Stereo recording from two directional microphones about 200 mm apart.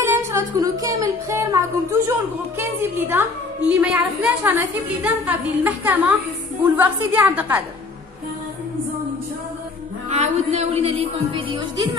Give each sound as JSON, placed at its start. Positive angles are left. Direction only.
{"t": 0.0, "sound": "speech", "side_deg": -15}
{"t": 10.0, "sound": "speech", "side_deg": -35}